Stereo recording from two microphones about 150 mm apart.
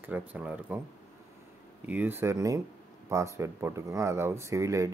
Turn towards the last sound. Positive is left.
turn(degrees=-20)  # may be behind; listen again after turning